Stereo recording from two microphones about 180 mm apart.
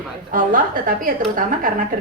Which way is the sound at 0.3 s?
50° right (ahead or behind).